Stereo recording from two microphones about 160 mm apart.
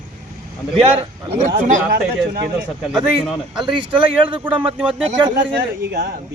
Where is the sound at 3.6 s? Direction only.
30° right (ahead or behind).